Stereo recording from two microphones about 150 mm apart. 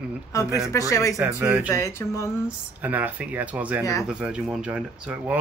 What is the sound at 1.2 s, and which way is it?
Speech, 10° right (ahead or behind).